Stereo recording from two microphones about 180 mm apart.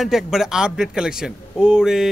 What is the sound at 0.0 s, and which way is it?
A man's voice, centre (ahead or behind).